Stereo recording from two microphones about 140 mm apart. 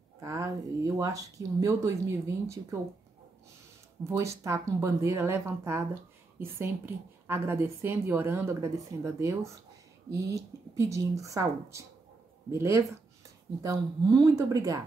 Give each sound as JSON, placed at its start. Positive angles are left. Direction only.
{"t": 0.2, "sound": "speech", "side_deg": -20}
{"t": 4.0, "sound": "a woman's voice", "side_deg": -20}